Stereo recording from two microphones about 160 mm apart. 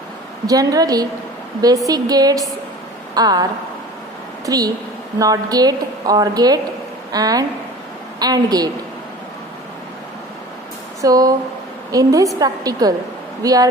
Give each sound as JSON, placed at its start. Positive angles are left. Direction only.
{"t": 0.4, "sound": "a woman's voice", "side_deg": -20}
{"t": 4.4, "sound": "a woman's voice", "side_deg": -25}
{"t": 11.0, "sound": "a woman's voice", "side_deg": -20}